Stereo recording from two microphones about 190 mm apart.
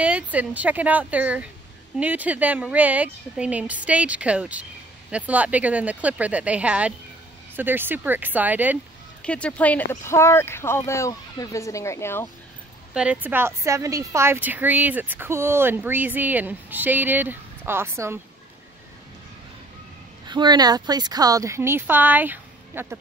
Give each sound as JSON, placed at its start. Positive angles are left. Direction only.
{"t": 0.0, "sound": "a woman's voice", "side_deg": -10}
{"t": 9.2, "sound": "speech", "side_deg": 5}
{"t": 12.9, "sound": "a woman's voice", "side_deg": -5}
{"t": 20.2, "sound": "a woman's voice", "side_deg": -25}